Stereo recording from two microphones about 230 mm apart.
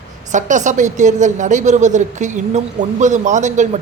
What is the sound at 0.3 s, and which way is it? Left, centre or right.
A woman's voice, right.